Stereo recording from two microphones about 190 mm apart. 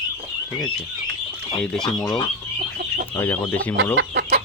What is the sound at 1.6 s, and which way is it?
Speech, 5° left (ahead or behind).